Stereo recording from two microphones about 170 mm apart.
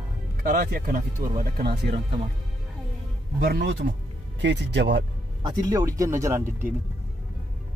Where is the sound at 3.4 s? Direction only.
75° right (ahead or behind).